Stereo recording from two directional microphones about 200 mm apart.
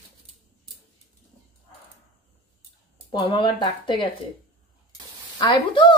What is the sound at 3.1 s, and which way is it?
Speech, 25° left (ahead or behind).